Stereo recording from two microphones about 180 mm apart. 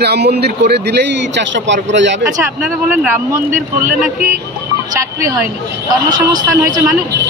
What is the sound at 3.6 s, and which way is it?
Speech, 50° right (ahead or behind).